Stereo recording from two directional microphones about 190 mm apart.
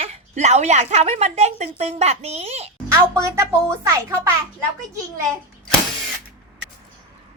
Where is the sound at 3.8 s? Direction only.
15° right (ahead or behind).